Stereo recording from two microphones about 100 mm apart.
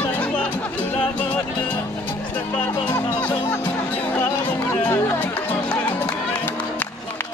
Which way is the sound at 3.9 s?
15° left (ahead or behind).